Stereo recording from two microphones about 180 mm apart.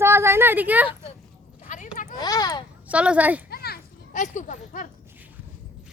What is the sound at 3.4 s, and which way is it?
Children playing, 60° left (ahead or behind).